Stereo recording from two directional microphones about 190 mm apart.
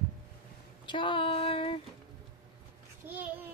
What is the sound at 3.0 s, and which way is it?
Speech, 10° right (ahead or behind).